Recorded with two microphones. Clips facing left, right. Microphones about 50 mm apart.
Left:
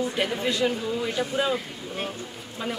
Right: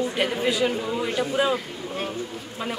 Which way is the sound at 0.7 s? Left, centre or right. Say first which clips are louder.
Right 2 dB; right.